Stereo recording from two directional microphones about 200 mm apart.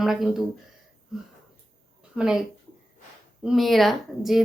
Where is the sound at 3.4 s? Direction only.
Centre (ahead or behind).